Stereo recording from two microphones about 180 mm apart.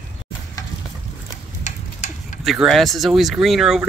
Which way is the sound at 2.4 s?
Centre (ahead or behind).